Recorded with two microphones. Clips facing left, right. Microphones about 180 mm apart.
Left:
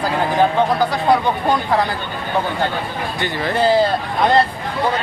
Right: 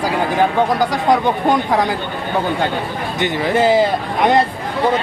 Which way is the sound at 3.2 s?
15° right (ahead or behind).